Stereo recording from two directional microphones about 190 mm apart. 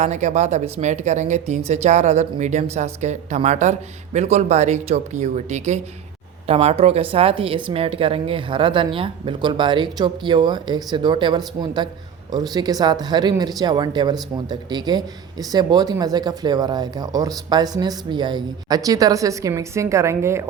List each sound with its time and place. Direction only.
0.0 s speech: 40° right (ahead or behind); by 20.4 s 15° right (ahead or behind)